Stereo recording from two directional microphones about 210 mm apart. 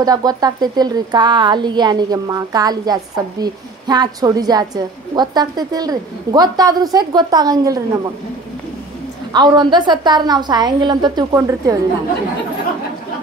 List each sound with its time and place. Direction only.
0.0 s a woman's voice: 20° right (ahead or behind)
9.3 s a woman's voice: 20° right (ahead or behind)